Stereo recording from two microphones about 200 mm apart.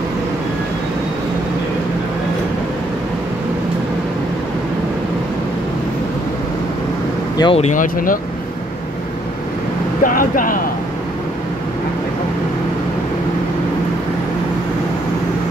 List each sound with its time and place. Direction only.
7.3 s speech: 25° left (ahead or behind); by 8.2 s 45° left (ahead or behind)
10.0 s speech: 45° left (ahead or behind)